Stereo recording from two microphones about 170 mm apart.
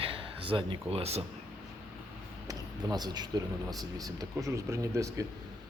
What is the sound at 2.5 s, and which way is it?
Speech, 20° right (ahead or behind).